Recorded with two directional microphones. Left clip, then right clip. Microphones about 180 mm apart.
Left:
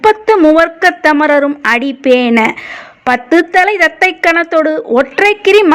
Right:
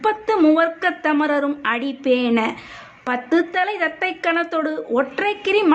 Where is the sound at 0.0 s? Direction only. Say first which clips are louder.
Left 10 dB; 40° left (ahead or behind).